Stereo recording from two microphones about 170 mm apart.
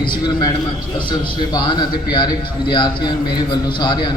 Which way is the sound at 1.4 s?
25° left (ahead or behind).